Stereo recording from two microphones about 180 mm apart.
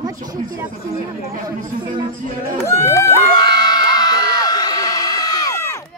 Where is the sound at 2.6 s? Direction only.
15° left (ahead or behind).